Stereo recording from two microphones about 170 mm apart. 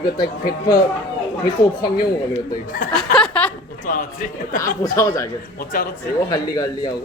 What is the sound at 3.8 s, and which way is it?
Speech, 50° left (ahead or behind).